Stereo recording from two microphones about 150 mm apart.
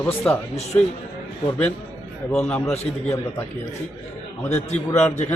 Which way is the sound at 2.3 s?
5° left (ahead or behind).